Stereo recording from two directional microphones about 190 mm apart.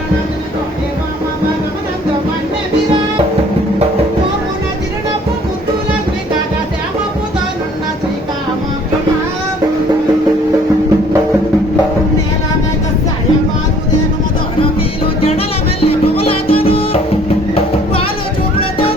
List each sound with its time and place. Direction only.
15.2 s music: 30° left (ahead or behind)